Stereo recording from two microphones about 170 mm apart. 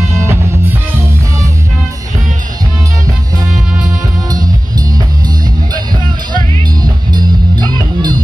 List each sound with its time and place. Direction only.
0.1 s music: 15° right (ahead or behind)
4.3 s music: 25° right (ahead or behind)
6.3 s music: 25° right (ahead or behind)